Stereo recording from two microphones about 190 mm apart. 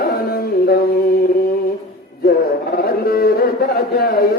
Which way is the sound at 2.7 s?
50° left (ahead or behind).